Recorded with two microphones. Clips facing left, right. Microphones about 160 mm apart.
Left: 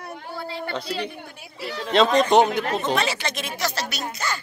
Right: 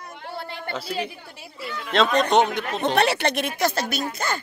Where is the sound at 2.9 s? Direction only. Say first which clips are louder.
Right 5 dB; 60° right (ahead or behind).